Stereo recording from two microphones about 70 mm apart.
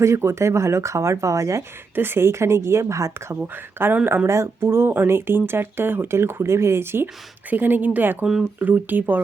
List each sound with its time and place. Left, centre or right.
0.0 s speech: right
2.0 s speech: right
3.4 s speech: right
4.3 s speech: right
8.2 s speech: centre
8.5 s speech: right